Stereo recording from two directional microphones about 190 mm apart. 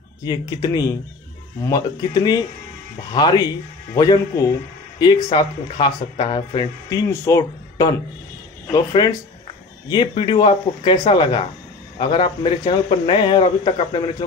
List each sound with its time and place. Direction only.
0.2 s speech: 20° left (ahead or behind)